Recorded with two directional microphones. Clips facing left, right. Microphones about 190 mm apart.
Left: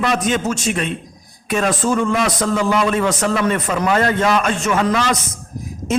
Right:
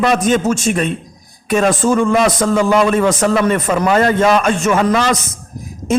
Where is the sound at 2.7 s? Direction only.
50° right (ahead or behind).